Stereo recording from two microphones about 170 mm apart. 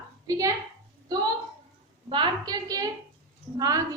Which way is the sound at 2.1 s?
25° right (ahead or behind).